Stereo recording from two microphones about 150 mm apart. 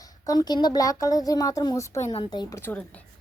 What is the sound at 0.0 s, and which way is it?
A woman's voice, 25° left (ahead or behind).